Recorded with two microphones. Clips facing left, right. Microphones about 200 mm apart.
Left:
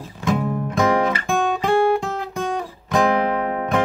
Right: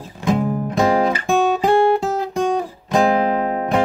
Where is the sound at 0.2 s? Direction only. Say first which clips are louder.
Right 3 dB; 30° right (ahead or behind).